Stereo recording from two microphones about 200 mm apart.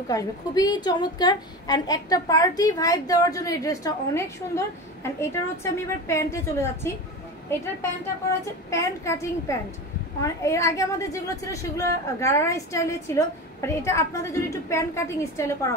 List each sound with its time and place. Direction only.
0.1 s a woman's voice: 15° left (ahead or behind)
8.6 s a woman's voice: 15° left (ahead or behind)